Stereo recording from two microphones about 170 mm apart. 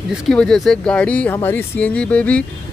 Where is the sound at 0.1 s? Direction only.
5° left (ahead or behind).